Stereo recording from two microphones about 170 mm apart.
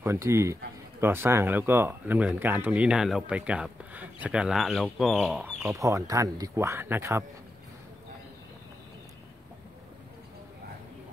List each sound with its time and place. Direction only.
0.0 s speech: 15° right (ahead or behind)
5.7 s speech: 20° right (ahead or behind)